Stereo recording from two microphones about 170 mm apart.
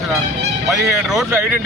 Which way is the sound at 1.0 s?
Centre (ahead or behind).